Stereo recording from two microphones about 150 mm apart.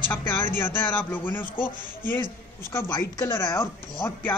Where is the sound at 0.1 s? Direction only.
15° left (ahead or behind).